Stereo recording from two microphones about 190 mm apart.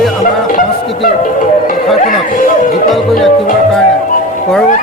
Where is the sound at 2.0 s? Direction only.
45° left (ahead or behind).